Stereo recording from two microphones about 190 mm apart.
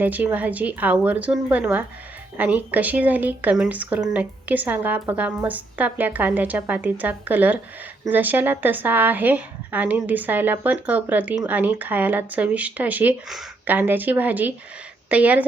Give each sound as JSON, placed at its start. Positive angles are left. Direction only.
{"t": 0.0, "sound": "a woman's voice", "side_deg": -10}